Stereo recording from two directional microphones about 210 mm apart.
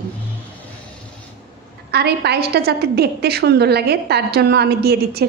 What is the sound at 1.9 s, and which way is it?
A woman's voice, 50° right (ahead or behind).